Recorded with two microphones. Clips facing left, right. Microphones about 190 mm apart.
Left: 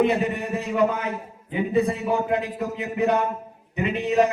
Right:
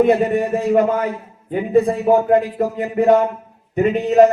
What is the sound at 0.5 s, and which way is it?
Speech, 50° right (ahead or behind).